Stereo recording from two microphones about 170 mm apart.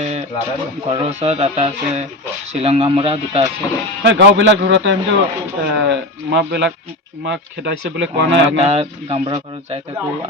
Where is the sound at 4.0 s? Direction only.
90° right.